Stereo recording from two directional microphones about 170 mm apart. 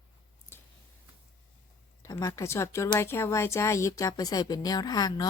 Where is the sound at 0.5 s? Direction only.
15° left (ahead or behind).